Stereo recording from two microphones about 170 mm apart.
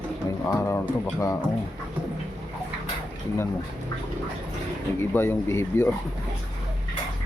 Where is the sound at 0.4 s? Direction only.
15° left (ahead or behind).